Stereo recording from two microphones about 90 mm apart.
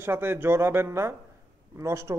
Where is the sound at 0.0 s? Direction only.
25° right (ahead or behind).